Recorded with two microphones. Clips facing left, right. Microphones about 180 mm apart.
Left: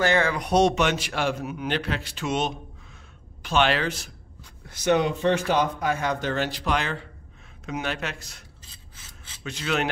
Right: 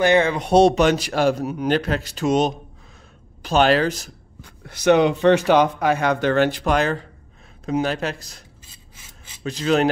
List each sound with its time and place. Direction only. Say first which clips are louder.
0.0 s a man's voice: right 5 dB; 20° right (ahead or behind); by 4.1 s 40° right (ahead or behind)
4.4 s a man's voice: right 7 dB; 65° right (ahead or behind); by 8.5 s 35° right (ahead or behind)
8.9 s filing: right 2 dB; 15° right (ahead or behind)
9.4 s a man's voice: right 8 dB; 35° right (ahead or behind)